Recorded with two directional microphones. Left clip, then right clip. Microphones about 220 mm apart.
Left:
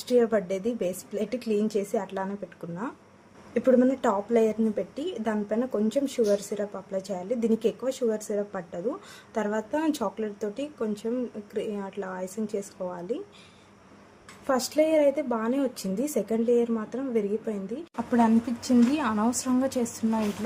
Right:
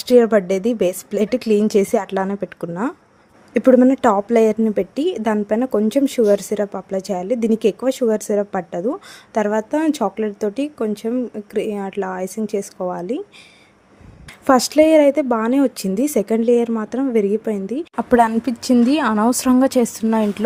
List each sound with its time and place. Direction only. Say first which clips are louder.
0.0 s a woman's voice: right 10 dB; 40° right (ahead or behind)
14.4 s a woman's voice: right 11 dB; 45° right (ahead or behind)